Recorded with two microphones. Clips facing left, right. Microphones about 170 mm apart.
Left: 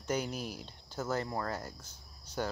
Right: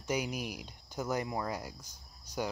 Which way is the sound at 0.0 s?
10° right (ahead or behind).